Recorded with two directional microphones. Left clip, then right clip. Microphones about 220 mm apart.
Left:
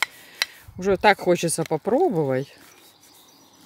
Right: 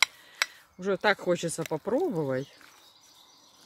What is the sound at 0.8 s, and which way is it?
Speech, 35° left (ahead or behind).